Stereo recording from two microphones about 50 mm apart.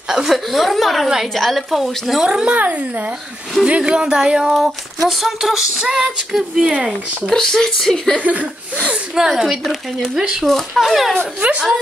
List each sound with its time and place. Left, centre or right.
0.1 s speech: centre
2.2 s speech: centre
3.6 s female singing: right
4.6 s female singing: centre
6.6 s speech: centre
7.2 s speech: centre
8.2 s speech: right
9.4 s speech: centre
10.1 s female singing: centre
10.4 s speech: centre
11.4 s speech: right